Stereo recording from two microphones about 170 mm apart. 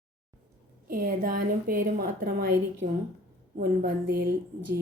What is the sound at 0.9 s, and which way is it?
A woman's voice, 60° right (ahead or behind).